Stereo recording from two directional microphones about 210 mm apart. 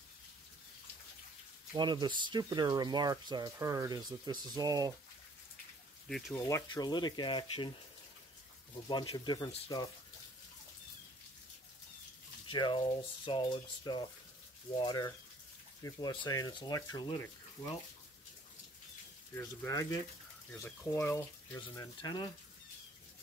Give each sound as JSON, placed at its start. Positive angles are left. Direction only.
{"t": 1.7, "sound": "speech", "side_deg": -20}
{"t": 6.0, "sound": "speech", "side_deg": 0}
{"t": 6.3, "sound": "speech", "side_deg": 15}
{"t": 8.8, "sound": "speech", "side_deg": 20}
{"t": 12.4, "sound": "speech", "side_deg": 25}
{"t": 19.3, "sound": "speech", "side_deg": 15}